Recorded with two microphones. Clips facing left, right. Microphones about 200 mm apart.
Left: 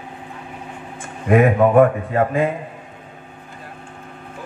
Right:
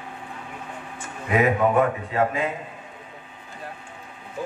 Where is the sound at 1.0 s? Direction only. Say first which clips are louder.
Left 6 dB; 50° left (ahead or behind).